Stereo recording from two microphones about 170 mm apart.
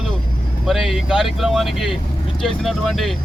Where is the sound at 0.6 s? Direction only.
Centre (ahead or behind).